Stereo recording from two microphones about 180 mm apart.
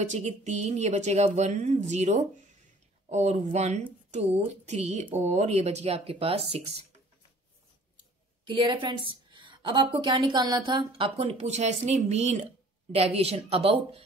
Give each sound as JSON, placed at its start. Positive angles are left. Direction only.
{"t": 0.0, "sound": "speech", "side_deg": -40}
{"t": 8.5, "sound": "a woman's voice", "side_deg": -25}